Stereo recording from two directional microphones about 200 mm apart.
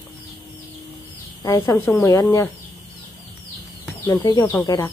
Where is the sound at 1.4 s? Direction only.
15° left (ahead or behind).